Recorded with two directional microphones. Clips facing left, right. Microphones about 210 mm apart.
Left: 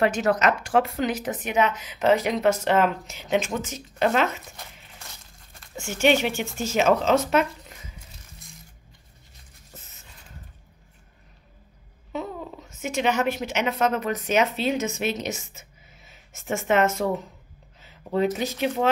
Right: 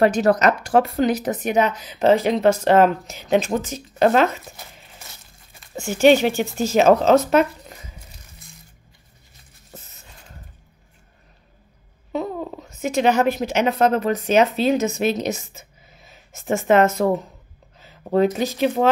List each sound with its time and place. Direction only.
0.0 s a woman's voice: 35° right (ahead or behind)
4.6 s a sound: 5° right (ahead or behind)
5.8 s a woman's voice: 35° right (ahead or behind)
12.1 s speech: 35° right (ahead or behind)